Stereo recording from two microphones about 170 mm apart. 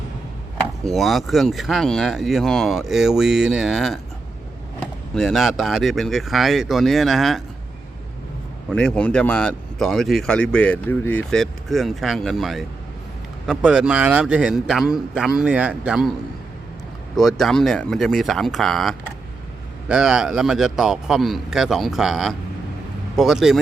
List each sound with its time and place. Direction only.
0.9 s speech: centre (ahead or behind)
8.7 s speech: 5° left (ahead or behind)
17.2 s speech: centre (ahead or behind)